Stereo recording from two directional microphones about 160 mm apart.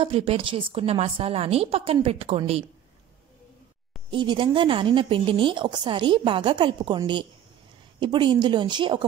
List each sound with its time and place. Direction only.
0.0 s a woman's voice: 35° right (ahead or behind)
4.1 s a woman's voice: 30° right (ahead or behind)